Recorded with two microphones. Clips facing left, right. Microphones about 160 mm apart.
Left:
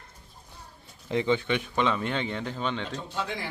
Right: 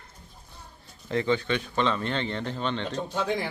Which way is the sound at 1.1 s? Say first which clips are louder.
Even; 15° left (ahead or behind).